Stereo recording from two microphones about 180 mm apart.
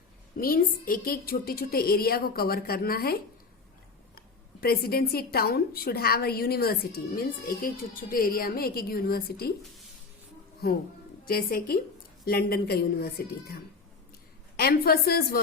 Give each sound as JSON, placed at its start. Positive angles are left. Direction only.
{"t": 0.3, "sound": "a woman's voice", "side_deg": 55}
{"t": 4.6, "sound": "a woman's voice", "side_deg": 60}
{"t": 11.3, "sound": "a woman's voice", "side_deg": 55}